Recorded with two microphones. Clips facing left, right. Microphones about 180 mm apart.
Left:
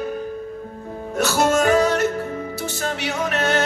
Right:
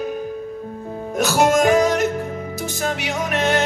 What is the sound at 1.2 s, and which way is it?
Music, 15° right (ahead or behind).